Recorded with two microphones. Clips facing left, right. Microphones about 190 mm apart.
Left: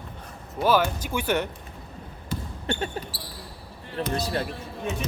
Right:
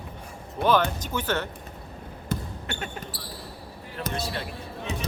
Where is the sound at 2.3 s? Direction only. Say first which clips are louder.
Right 2 dB; 50° right (ahead or behind).